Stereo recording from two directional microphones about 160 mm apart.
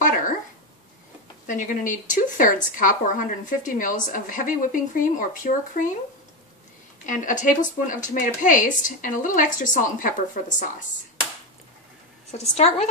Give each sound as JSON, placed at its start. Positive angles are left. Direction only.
{"t": 1.5, "sound": "a woman's voice", "side_deg": 55}
{"t": 7.1, "sound": "a woman's voice", "side_deg": 55}
{"t": 12.3, "sound": "a woman's voice", "side_deg": 40}